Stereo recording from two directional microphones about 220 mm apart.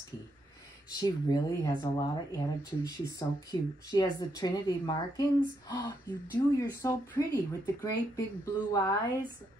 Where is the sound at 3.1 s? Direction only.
15° left (ahead or behind).